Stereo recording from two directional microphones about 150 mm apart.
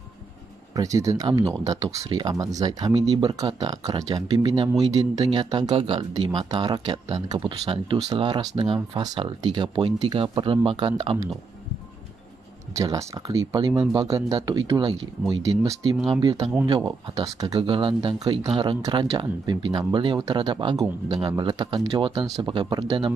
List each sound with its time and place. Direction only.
0.7 s speech: 20° right (ahead or behind)
12.7 s speech: 20° right (ahead or behind)